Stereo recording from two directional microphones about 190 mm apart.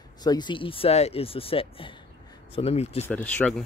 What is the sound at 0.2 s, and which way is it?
Speech, 20° left (ahead or behind).